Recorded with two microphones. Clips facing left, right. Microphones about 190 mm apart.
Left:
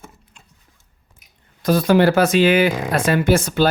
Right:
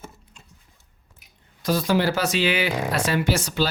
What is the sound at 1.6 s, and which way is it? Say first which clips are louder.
Speech: left 7 dB; 55° left (ahead or behind).